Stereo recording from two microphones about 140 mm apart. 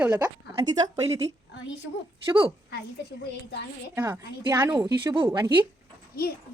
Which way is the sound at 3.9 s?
15° right (ahead or behind).